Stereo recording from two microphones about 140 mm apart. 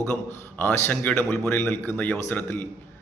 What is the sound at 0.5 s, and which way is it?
A man's voice, 15° left (ahead or behind).